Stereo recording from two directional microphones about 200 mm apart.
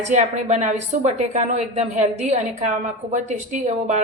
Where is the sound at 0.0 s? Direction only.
35° right (ahead or behind).